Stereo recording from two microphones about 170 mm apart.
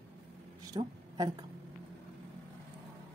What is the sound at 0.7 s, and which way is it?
Speech, 25° right (ahead or behind).